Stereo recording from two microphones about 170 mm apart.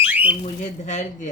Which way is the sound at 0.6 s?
45° left (ahead or behind).